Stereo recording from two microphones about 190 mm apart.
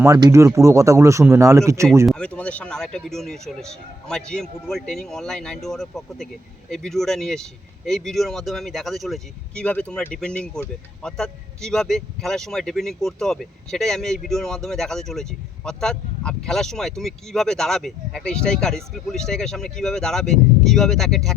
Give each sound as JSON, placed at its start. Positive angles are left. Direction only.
{"t": 0.0, "sound": "speech", "side_deg": -15}
{"t": 2.0, "sound": "speech", "side_deg": 5}